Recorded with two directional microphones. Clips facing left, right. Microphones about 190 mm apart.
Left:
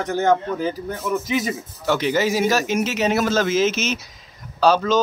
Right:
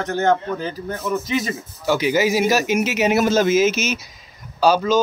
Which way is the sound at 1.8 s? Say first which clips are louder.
Right 2 dB; 5° right (ahead or behind).